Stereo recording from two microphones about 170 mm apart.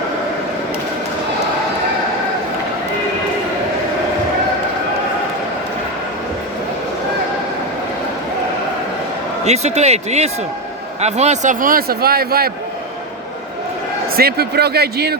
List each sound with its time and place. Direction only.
9.4 s a man's voice: 40° right (ahead or behind); by 12.5 s 65° right (ahead or behind)
14.2 s speech: 65° right (ahead or behind)